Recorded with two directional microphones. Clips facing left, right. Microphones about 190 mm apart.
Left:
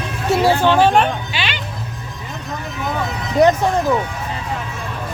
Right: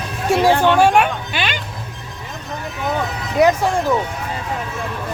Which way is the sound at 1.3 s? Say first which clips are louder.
Right 2 dB; 50° right (ahead or behind).